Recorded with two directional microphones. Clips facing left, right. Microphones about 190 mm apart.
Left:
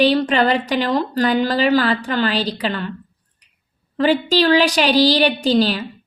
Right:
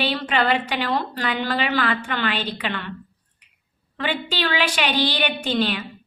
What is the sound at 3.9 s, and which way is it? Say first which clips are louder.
A woman's voice: left 10 dB; 40° left (ahead or behind).